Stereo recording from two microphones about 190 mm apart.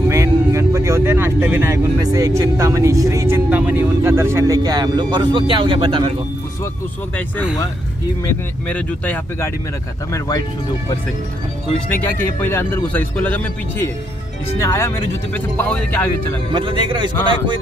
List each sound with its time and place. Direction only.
0.1 s speech: 15° right (ahead or behind)
8.6 s speech: 5° left (ahead or behind)
10.1 s speech: 20° left (ahead or behind)
12.4 s speech: 10° left (ahead or behind)
16.5 s speech: 25° right (ahead or behind)